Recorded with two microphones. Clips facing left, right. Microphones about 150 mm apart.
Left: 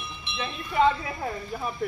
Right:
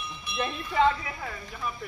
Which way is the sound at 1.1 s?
35° left (ahead or behind).